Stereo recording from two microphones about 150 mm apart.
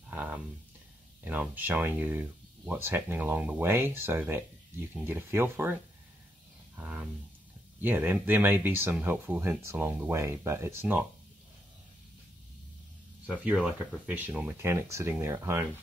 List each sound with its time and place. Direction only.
0.1 s a sound: 10° right (ahead or behind)
1.2 s speech: 10° right (ahead or behind)
6.8 s speech: 10° right (ahead or behind)
13.3 s speech: 10° right (ahead or behind)